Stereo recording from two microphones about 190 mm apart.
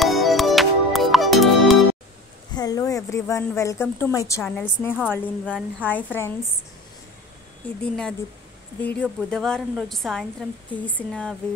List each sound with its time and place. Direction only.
0.0 s music: centre (ahead or behind)
2.5 s a woman's voice: 20° left (ahead or behind)
7.8 s a woman's voice: 5° left (ahead or behind)